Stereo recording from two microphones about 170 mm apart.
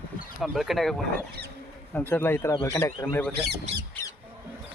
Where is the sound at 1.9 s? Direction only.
10° left (ahead or behind).